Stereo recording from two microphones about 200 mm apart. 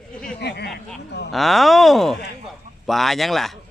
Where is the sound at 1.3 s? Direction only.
Centre (ahead or behind).